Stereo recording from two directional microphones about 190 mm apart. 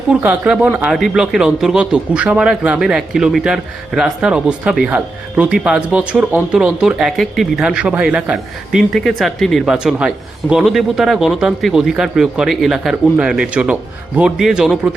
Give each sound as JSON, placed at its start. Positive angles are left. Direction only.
{"t": 0.1, "sound": "speech", "side_deg": -5}